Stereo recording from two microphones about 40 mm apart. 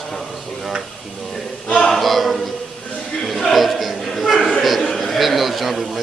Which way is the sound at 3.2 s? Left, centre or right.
Centre.